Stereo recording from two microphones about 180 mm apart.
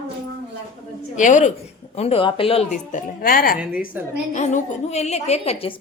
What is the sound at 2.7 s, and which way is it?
Speech, 50° left (ahead or behind).